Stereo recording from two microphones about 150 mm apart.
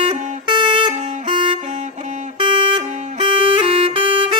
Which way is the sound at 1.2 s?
35° right (ahead or behind).